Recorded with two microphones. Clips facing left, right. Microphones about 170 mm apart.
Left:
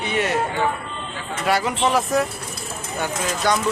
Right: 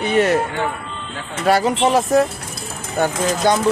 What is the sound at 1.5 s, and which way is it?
Speech, 35° right (ahead or behind).